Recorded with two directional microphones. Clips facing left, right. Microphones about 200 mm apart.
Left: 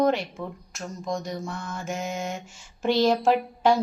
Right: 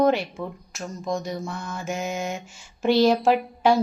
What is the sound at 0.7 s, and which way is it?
Mantra, 5° right (ahead or behind).